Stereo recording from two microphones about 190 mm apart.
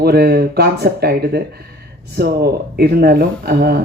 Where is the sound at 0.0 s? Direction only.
55° right (ahead or behind).